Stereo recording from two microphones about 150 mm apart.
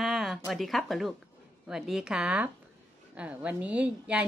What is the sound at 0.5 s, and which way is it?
A woman's voice, centre (ahead or behind).